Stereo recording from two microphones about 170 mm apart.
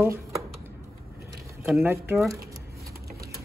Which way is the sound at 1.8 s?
15° right (ahead or behind).